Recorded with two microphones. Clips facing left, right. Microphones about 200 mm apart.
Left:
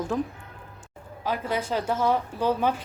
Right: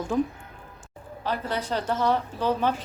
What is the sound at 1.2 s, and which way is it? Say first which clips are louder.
A woman's voice: left 1 dB; 10° left (ahead or behind).